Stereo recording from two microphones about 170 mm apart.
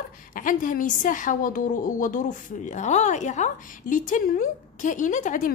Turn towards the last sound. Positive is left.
turn(degrees=50)  # may be behind; listen again after turning